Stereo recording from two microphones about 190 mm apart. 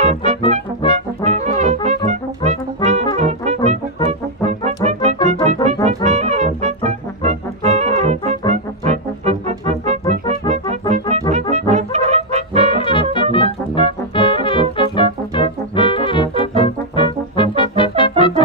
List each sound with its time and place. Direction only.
0.0 s music: 35° right (ahead or behind)
0.5 s brass instrument: 35° right (ahead or behind)
6.0 s music: 35° right (ahead or behind)
11.5 s brass instrument: 35° right (ahead or behind)
12.7 s brass instrument: 25° left (ahead or behind)
13.1 s music: 25° left (ahead or behind)